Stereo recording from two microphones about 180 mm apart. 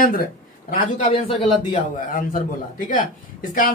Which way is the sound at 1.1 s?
30° left (ahead or behind).